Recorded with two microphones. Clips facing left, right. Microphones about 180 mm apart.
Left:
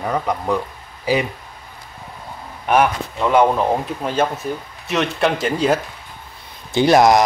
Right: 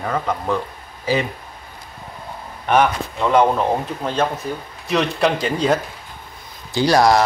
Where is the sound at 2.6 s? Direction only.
10° left (ahead or behind).